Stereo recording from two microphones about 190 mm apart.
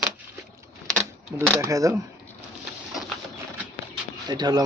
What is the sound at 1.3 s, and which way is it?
Speech, 5° right (ahead or behind).